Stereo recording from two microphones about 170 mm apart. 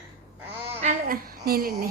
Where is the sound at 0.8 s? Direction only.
55° right (ahead or behind).